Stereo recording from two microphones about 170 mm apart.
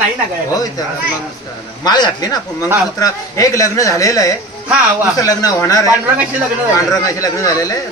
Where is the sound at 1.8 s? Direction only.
25° left (ahead or behind).